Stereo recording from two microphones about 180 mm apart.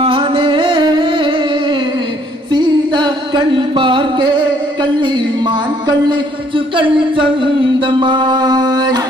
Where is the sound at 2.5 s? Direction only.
25° right (ahead or behind).